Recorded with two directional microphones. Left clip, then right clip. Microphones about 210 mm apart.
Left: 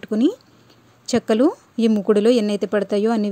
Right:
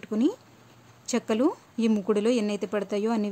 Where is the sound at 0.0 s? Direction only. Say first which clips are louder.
Left 7 dB; 20° left (ahead or behind).